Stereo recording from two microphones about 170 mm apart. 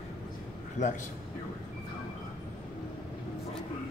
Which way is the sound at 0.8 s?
45° left (ahead or behind).